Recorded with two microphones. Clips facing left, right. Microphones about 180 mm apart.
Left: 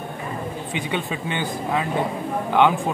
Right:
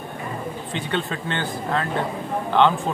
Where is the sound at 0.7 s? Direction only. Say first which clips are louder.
Even; 10° left (ahead or behind).